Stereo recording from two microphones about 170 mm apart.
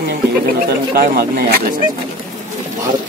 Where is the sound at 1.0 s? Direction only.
65° right (ahead or behind).